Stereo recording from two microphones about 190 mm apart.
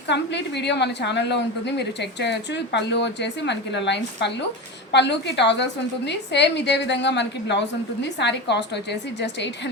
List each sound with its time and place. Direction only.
0.1 s a woman's voice: 65° left (ahead or behind)